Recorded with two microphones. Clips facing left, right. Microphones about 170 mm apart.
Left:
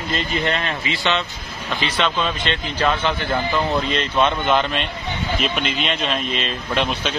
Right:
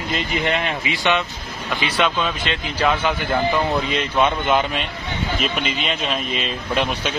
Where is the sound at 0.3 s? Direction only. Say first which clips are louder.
Right 2 dB; 15° right (ahead or behind).